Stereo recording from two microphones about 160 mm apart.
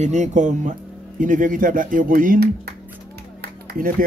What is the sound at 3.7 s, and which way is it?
Speech, 60° right (ahead or behind).